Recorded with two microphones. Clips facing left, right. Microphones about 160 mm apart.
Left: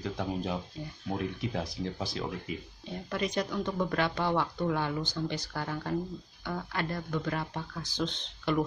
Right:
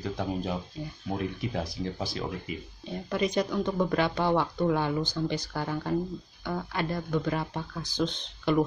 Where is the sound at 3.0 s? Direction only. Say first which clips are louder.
Right 4 dB; 15° right (ahead or behind).